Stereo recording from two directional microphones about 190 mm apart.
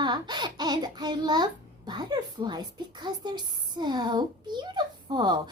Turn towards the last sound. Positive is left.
turn(degrees=-25)  # may be behind; listen again after turning